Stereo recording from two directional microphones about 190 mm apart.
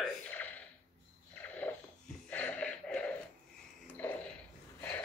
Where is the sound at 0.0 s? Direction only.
5° left (ahead or behind).